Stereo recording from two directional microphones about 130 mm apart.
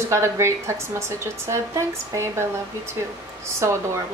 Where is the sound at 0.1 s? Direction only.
20° right (ahead or behind).